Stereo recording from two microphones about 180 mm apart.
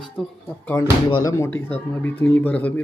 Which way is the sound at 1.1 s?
20° left (ahead or behind).